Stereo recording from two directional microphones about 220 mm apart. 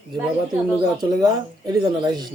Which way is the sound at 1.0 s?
15° right (ahead or behind).